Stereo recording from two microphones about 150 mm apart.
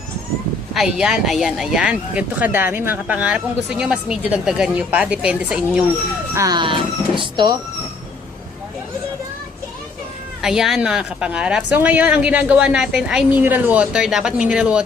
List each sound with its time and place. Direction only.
0.7 s speech: 5° right (ahead or behind)
6.3 s speech: 25° right (ahead or behind)
10.4 s speech: 5° right (ahead or behind)